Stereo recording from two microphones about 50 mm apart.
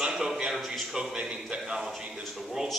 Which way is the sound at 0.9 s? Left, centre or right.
Centre.